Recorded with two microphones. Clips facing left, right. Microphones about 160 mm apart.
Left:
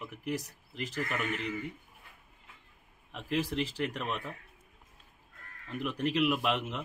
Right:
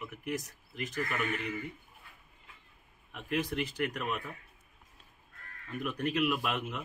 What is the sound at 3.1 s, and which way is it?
Speech, 30° left (ahead or behind).